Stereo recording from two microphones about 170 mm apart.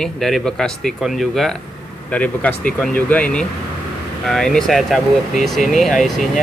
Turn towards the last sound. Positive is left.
turn(degrees=0)  # may be behind; listen again after turning